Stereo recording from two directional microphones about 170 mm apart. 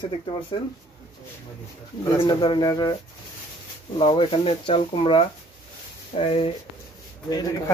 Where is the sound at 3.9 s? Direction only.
30° left (ahead or behind).